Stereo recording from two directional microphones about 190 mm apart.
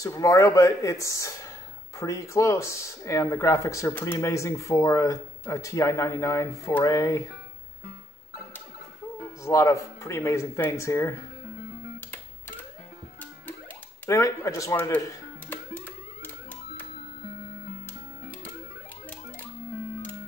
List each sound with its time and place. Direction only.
0.0 s speech: 15° left (ahead or behind)
9.4 s speech: 15° left (ahead or behind)
14.0 s music: 15° left (ahead or behind)